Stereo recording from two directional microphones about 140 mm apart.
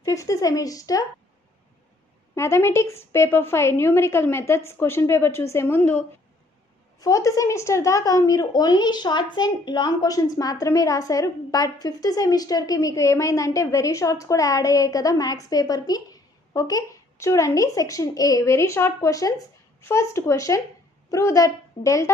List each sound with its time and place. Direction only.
0.0 s a woman's voice: 20° left (ahead or behind)
2.3 s a woman's voice: 20° left (ahead or behind)